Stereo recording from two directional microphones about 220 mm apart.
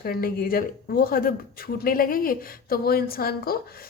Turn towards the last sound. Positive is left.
turn(degrees=45)  # may be behind; listen again after turning